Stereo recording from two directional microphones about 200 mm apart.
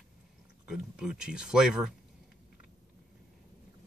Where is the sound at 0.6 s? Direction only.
5° right (ahead or behind).